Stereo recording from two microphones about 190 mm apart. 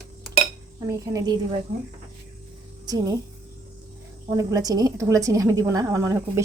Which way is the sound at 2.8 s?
20° right (ahead or behind).